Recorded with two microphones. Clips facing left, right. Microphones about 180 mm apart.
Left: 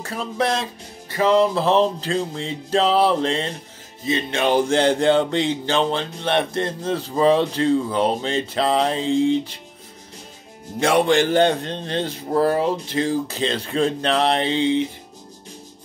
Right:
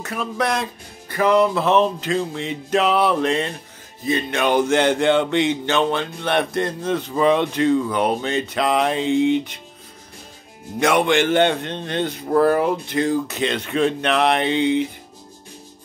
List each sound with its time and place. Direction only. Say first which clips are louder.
0.0 s music: even; 30° left (ahead or behind)
4.0 s speech: right 1 dB; 25° left (ahead or behind)
10.8 s speech: even; 30° left (ahead or behind)